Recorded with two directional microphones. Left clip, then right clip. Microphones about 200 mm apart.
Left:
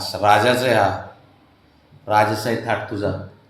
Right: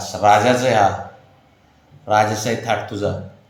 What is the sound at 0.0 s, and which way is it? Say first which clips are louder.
Speech: right 2 dB; centre (ahead or behind).